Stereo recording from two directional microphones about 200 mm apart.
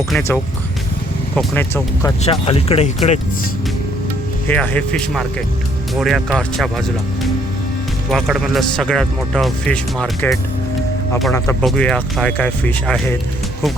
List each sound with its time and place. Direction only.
1.4 s speech: 10° left (ahead or behind)
2.2 s speech: 30° left (ahead or behind)
4.4 s speech: 10° left (ahead or behind)
8.1 s speech: centre (ahead or behind)